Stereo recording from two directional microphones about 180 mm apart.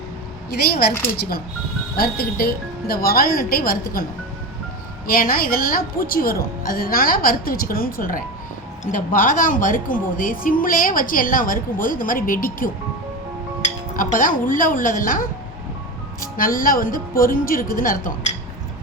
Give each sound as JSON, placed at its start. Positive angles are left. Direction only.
{"t": 0.5, "sound": "a woman's voice", "side_deg": 60}
{"t": 5.0, "sound": "a woman's voice", "side_deg": 55}
{"t": 13.9, "sound": "a woman's voice", "side_deg": 50}